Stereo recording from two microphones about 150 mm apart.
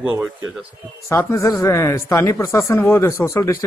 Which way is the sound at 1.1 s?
20° left (ahead or behind).